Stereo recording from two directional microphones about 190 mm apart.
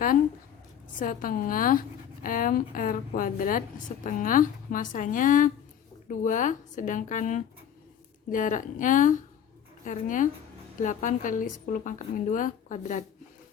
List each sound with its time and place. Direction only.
0.9 s a woman's voice: 45° left (ahead or behind)